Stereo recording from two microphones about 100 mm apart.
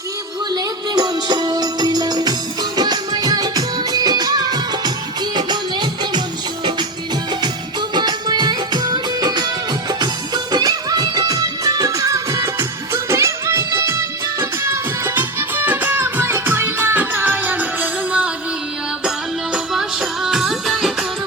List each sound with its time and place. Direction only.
0.5 s music: 40° right (ahead or behind)
7.4 s music: 45° right (ahead or behind); by 18.3 s 15° right (ahead or behind)
19.5 s music: 5° right (ahead or behind)